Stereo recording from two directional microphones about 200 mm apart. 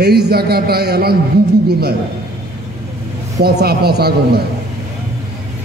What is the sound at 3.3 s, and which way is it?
A man's voice, 55° right (ahead or behind).